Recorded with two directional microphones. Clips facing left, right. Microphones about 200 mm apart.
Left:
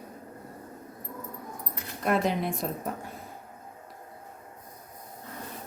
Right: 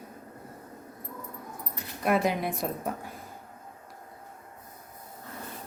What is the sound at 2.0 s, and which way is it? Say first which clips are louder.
Speech: even; 5° right (ahead or behind).